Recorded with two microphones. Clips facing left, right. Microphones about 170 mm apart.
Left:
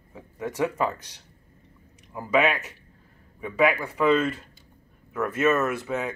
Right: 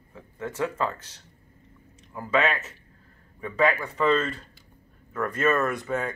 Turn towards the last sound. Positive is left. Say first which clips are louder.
# even
turn(degrees=5)  # may be behind; listen again after turning